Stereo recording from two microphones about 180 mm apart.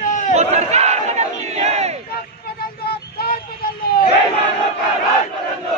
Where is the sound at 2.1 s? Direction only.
60° left (ahead or behind).